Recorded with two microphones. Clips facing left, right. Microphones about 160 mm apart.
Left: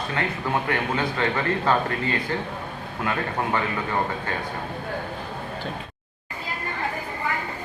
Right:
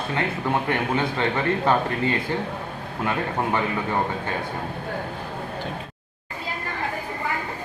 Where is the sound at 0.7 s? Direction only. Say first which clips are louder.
Right 2 dB; 20° right (ahead or behind).